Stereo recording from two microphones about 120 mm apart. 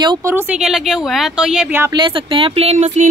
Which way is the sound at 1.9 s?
45° right (ahead or behind).